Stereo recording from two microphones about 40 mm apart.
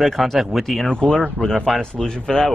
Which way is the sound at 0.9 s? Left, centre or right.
Centre.